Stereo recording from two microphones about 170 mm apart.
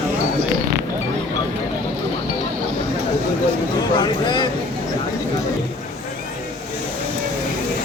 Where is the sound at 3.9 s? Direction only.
25° left (ahead or behind).